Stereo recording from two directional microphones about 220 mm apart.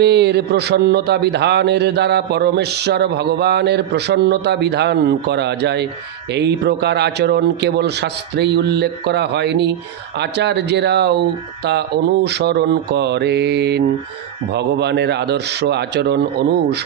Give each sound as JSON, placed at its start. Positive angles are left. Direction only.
{"t": 0.0, "sound": "speech", "side_deg": -50}